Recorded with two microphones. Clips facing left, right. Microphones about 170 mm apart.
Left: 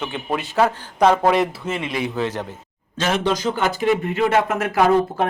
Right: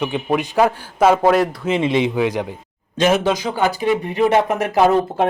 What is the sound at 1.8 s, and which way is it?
Speech, 25° right (ahead or behind).